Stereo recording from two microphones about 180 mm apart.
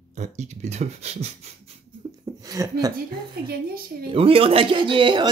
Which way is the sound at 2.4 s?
20° right (ahead or behind).